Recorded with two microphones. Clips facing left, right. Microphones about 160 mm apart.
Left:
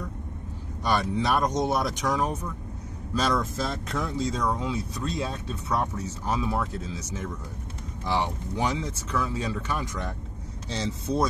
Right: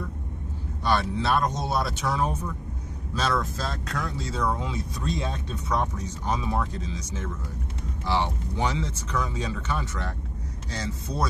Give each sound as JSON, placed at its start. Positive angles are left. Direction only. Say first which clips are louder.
{"t": 1.2, "sound": "speech", "louder": "left 1 dB", "side_deg": 15}
{"t": 4.6, "sound": "speech", "louder": "left 1 dB", "side_deg": 5}
{"t": 10.7, "sound": "speech", "louder": "left 5 dB", "side_deg": 25}